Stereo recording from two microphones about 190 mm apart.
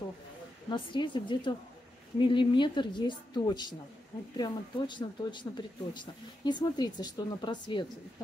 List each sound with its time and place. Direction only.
0.7 s speech: 25° left (ahead or behind)